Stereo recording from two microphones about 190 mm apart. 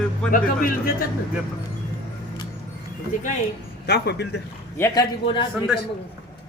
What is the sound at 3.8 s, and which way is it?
Speech, 60° left (ahead or behind).